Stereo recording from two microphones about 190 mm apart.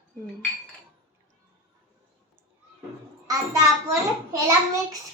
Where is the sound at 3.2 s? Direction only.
15° right (ahead or behind).